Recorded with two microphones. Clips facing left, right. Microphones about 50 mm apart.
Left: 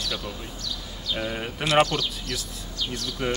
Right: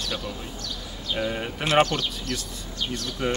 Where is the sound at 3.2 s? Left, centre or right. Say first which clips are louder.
Right 1 dB; centre.